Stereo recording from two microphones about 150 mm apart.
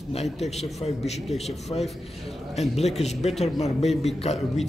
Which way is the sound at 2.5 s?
45° left (ahead or behind).